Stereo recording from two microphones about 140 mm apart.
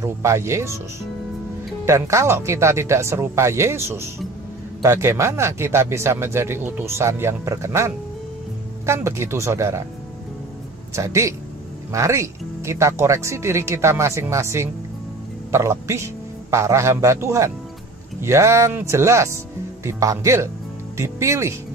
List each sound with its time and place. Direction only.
0.0 s speech: 20° right (ahead or behind)
1.9 s speech: 20° right (ahead or behind)
11.0 s a man's voice: 20° right (ahead or behind)